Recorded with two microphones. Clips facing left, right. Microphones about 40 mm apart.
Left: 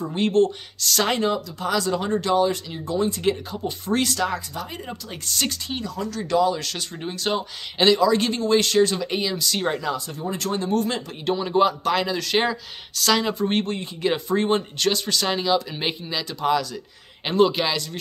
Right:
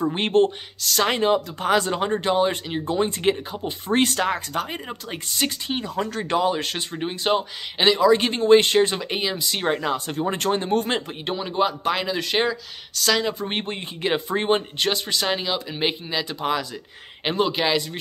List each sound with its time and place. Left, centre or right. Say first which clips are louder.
0.0 s speech: right 1 dB; right
0.7 s speech: even; centre
1.1 s speech: right 3 dB; right
1.6 s speech: right 2 dB; right
3.9 s speech: right 2 dB; right
5.1 s speech: right 1 dB; right
5.8 s speech: right 3 dB; right
9.8 s speech: right 3 dB; right
11.4 s speech: left 2 dB; centre
12.4 s speech: left 2 dB; centre
13.5 s speech: left 4 dB; right